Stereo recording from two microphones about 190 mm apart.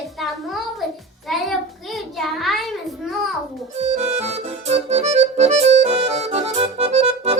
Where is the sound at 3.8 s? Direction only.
35° right (ahead or behind).